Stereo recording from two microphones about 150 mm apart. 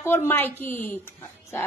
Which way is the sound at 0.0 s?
15° left (ahead or behind).